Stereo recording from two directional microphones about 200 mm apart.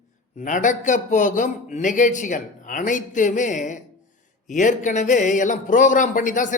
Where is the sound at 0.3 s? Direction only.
40° left (ahead or behind).